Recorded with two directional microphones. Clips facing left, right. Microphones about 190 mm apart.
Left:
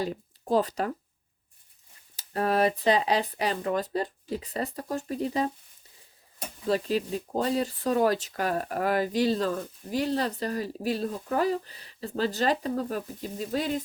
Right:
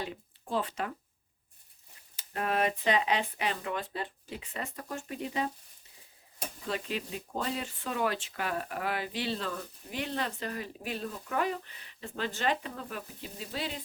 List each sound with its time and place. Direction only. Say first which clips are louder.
0.0 s speech: left 7 dB; 40° left (ahead or behind)
2.1 s speech: left 6 dB; 35° left (ahead or behind)
6.7 s speech: left 9 dB; 35° left (ahead or behind)